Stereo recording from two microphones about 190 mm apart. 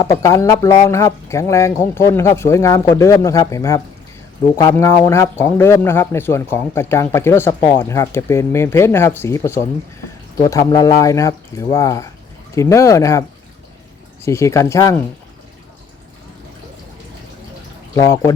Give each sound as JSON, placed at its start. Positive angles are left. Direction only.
{"t": 0.2, "sound": "speech", "side_deg": 15}
{"t": 17.9, "sound": "speech", "side_deg": 15}